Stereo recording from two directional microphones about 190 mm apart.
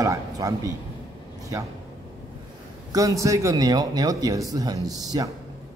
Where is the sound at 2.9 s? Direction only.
20° right (ahead or behind).